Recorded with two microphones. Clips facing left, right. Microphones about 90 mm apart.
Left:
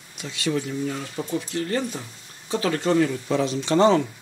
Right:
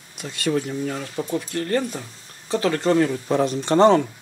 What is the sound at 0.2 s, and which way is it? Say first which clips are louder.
Speech: right 3 dB; 50° right (ahead or behind).